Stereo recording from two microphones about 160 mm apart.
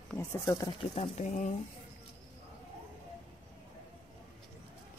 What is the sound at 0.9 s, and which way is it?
Speech, 40° left (ahead or behind).